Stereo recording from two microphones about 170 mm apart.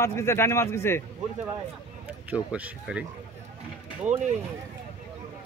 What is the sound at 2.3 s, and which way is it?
Speech, 5° right (ahead or behind).